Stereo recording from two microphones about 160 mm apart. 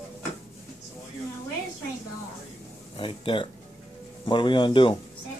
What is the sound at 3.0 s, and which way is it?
Speech, 30° left (ahead or behind).